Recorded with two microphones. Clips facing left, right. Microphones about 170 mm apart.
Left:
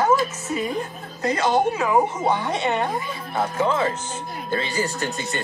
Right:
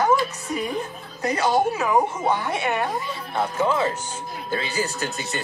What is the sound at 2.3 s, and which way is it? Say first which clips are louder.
Speech: left 1 dB; 20° left (ahead or behind).